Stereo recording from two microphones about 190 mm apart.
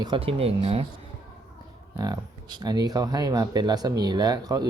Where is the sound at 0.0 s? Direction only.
25° right (ahead or behind).